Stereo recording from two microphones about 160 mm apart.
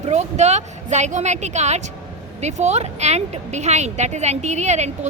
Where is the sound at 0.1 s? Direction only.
45° right (ahead or behind).